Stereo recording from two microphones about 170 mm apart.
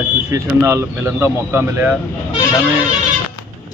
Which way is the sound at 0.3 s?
20° right (ahead or behind).